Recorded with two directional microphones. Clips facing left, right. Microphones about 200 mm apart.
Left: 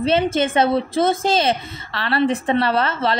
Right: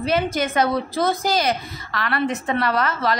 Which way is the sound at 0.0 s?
25° left (ahead or behind).